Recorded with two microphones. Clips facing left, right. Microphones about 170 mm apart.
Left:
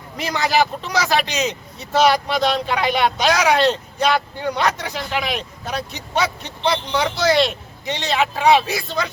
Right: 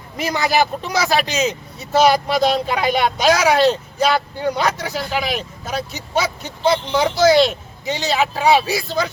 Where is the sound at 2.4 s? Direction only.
40° right (ahead or behind).